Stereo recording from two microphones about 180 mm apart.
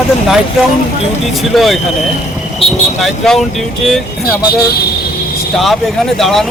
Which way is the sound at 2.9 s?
Centre (ahead or behind).